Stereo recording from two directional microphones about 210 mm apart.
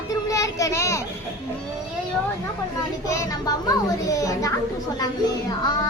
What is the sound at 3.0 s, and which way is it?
A child's voice, 15° left (ahead or behind).